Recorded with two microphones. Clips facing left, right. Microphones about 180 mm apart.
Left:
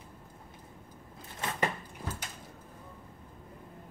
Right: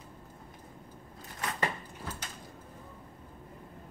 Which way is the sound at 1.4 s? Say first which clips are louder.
Left 1 dB; 20° left (ahead or behind).